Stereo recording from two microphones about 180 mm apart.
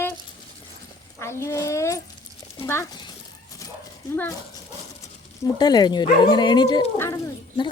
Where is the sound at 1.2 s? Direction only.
15° left (ahead or behind).